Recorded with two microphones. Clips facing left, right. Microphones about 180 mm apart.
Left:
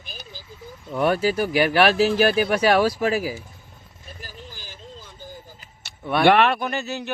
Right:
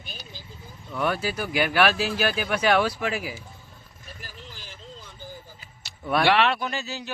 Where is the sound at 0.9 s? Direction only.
35° left (ahead or behind).